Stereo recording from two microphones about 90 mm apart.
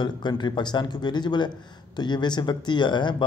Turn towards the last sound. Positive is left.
turn(degrees=55)  # may be behind; listen again after turning